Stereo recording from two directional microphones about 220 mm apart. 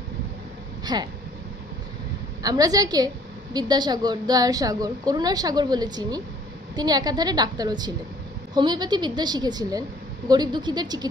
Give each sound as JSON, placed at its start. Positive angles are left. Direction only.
{"t": 0.9, "sound": "a woman's voice", "side_deg": -20}
{"t": 2.4, "sound": "a woman's voice", "side_deg": -15}